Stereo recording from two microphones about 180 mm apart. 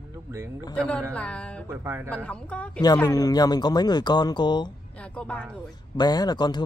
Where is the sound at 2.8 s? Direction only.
20° left (ahead or behind).